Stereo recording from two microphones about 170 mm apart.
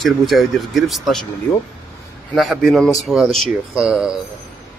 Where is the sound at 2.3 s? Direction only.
Centre (ahead or behind).